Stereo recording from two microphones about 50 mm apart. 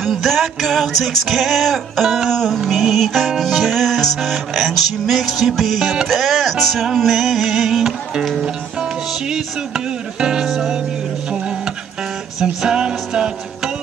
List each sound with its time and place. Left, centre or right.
0.0 s music: centre
10.4 s music: centre
12.6 s music: centre